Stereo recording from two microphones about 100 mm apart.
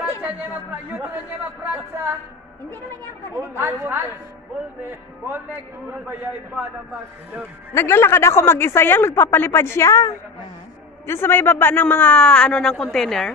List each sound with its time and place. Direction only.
1.6 s a woman's voice: 25° right (ahead or behind)
3.3 s a woman's voice: 25° right (ahead or behind)
7.7 s a man's voice: 25° left (ahead or behind); by 13.3 s 5° left (ahead or behind)